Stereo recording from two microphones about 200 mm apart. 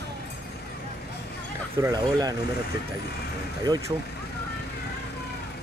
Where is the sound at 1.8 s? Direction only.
15° right (ahead or behind).